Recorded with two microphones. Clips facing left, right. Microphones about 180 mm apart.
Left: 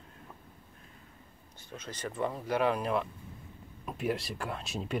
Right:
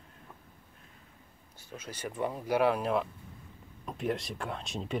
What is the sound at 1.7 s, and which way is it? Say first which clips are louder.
Speech: even; 10° right (ahead or behind).